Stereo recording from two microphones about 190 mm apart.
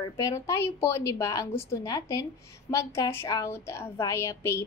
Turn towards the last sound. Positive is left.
turn(degrees=15)  # may be behind; listen again after turning